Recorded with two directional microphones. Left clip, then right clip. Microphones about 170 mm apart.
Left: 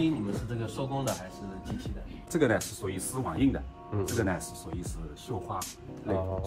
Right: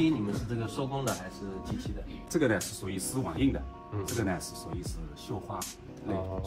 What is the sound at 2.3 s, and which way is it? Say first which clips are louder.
Speech: left 2 dB; 30° left (ahead or behind).